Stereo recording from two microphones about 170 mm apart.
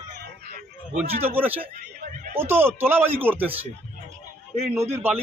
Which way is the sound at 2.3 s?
15° right (ahead or behind).